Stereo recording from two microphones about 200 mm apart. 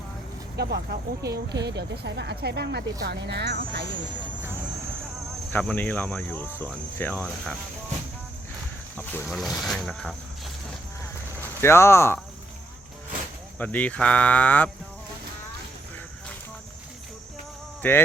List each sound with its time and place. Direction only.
0.5 s speech: 55° right (ahead or behind)
5.5 s speech: 10° left (ahead or behind)
9.2 s speech: centre (ahead or behind)
11.3 s speech: 10° left (ahead or behind)
13.6 s speech: 10° left (ahead or behind)
17.8 s speech: 10° left (ahead or behind)